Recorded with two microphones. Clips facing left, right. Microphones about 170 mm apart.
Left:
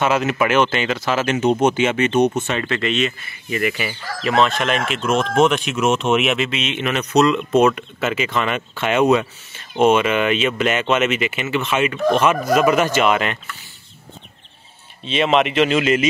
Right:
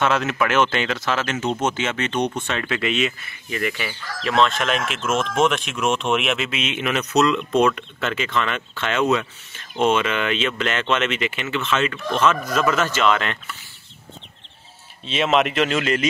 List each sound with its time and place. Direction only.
0.0 s speech: 5° left (ahead or behind)
1.2 s speech: 15° left (ahead or behind); by 5.1 s centre (ahead or behind)
5.1 s speech: 40° left (ahead or behind)
5.4 s speech: centre (ahead or behind)
15.0 s speech: centre (ahead or behind)